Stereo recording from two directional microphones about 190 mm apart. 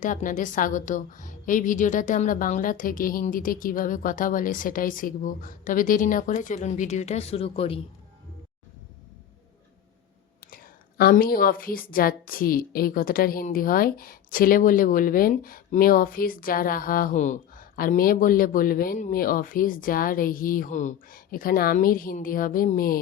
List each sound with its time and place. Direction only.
0.0 s a woman's voice: 45° left (ahead or behind)
10.4 s a woman's voice: 50° left (ahead or behind)